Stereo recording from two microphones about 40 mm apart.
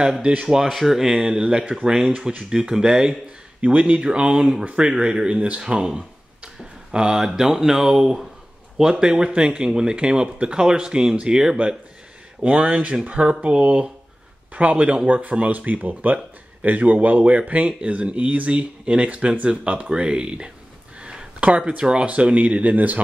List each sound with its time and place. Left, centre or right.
0.7 s speech: centre
0.9 s speech: centre
3.6 s speech: right; by 4.6 s centre
4.6 s speech: right
21.0 s a sound: right
21.4 s speech: right